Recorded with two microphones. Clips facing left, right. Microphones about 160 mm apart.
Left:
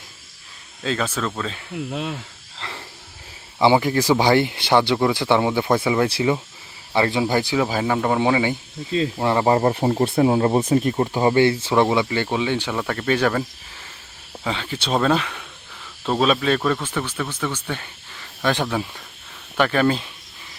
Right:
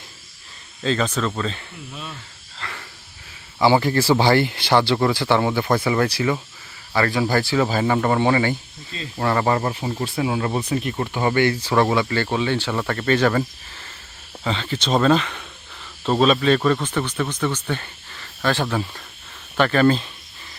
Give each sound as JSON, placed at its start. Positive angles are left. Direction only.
{"t": 0.8, "sound": "speech", "side_deg": 5}
{"t": 1.7, "sound": "speech", "side_deg": 75}
{"t": 2.6, "sound": "a sound", "side_deg": 25}
{"t": 3.6, "sound": "speech", "side_deg": 20}
{"t": 6.1, "sound": "speech", "side_deg": 25}
{"t": 7.6, "sound": "speech", "side_deg": 5}
{"t": 9.5, "sound": "speech", "side_deg": 30}
{"t": 9.8, "sound": "speech", "side_deg": 50}
{"t": 10.2, "sound": "speech", "side_deg": 35}
{"t": 11.7, "sound": "speech", "side_deg": 15}